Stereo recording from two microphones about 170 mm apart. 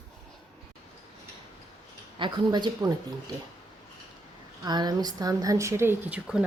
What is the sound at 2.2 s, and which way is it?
Speech, 25° right (ahead or behind).